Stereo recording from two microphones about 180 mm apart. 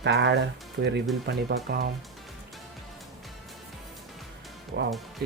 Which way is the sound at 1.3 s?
60° right (ahead or behind).